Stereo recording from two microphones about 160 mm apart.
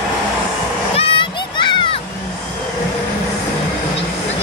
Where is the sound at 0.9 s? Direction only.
35° left (ahead or behind).